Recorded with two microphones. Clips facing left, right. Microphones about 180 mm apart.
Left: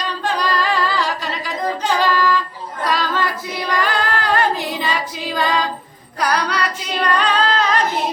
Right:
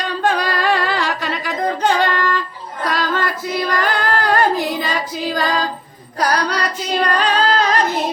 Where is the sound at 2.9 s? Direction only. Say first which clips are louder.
Even; 50° right (ahead or behind).